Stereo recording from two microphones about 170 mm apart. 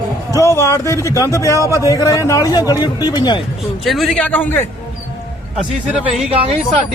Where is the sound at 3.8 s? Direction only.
Centre (ahead or behind).